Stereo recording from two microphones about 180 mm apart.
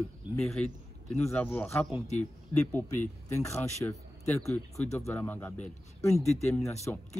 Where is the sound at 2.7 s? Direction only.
10° left (ahead or behind).